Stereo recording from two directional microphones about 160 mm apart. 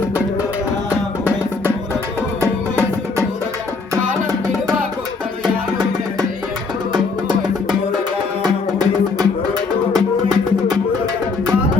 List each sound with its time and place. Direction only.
0.9 s music: 10° right (ahead or behind)
5.4 s music: 25° right (ahead or behind)
9.1 s music: 25° right (ahead or behind)